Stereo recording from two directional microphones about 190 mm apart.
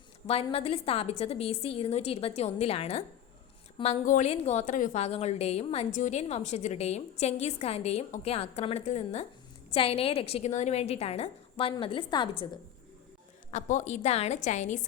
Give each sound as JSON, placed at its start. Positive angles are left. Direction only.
{"t": 0.5, "sound": "a woman's voice", "side_deg": 30}
{"t": 4.0, "sound": "a woman's voice", "side_deg": 40}
{"t": 13.5, "sound": "a woman's voice", "side_deg": 40}